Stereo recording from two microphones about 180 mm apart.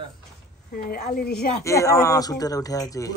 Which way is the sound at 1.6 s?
15° left (ahead or behind).